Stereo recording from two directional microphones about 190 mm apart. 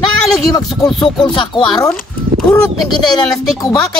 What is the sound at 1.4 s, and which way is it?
Speech, 25° left (ahead or behind).